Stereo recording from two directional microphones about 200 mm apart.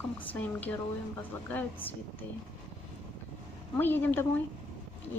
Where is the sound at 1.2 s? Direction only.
10° left (ahead or behind).